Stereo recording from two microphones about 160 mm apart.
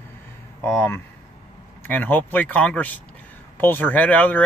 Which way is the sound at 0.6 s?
15° left (ahead or behind).